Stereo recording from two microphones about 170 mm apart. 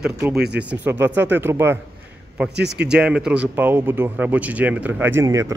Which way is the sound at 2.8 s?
5° right (ahead or behind).